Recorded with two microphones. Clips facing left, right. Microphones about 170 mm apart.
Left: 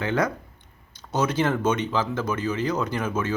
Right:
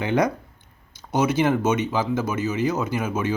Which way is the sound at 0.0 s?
15° right (ahead or behind).